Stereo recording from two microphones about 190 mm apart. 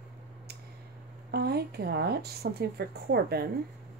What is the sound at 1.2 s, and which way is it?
Speech, 55° right (ahead or behind).